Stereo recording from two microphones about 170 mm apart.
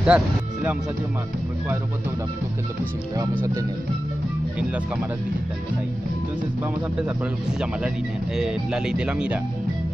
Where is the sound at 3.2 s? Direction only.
20° right (ahead or behind).